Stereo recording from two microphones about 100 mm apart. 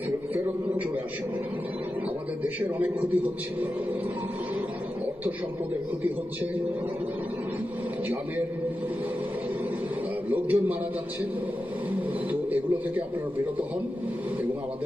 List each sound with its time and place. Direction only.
10.2 s a man's voice: 15° right (ahead or behind)